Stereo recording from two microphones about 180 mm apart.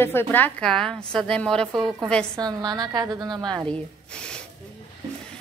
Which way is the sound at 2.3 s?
20° right (ahead or behind).